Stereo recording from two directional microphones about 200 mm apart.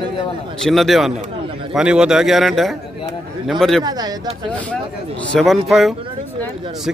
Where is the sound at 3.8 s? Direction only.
20° right (ahead or behind).